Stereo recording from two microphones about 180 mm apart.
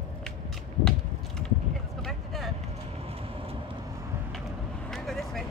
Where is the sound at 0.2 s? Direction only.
Centre (ahead or behind).